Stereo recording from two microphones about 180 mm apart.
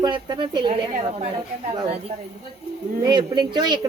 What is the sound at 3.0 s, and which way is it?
Speech, 25° right (ahead or behind).